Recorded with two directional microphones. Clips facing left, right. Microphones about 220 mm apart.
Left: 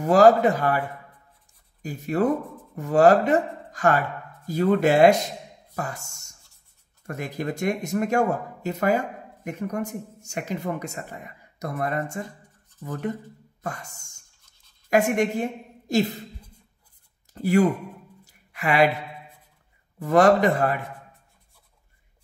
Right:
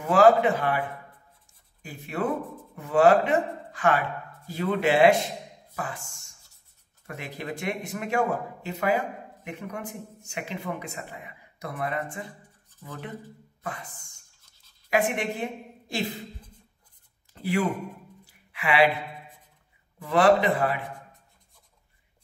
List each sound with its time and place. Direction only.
0.0 s a woman's voice: 40° left (ahead or behind)
17.3 s speech: 45° left (ahead or behind)
18.2 s a sound: 45° left (ahead or behind)
20.0 s speech: 45° left (ahead or behind)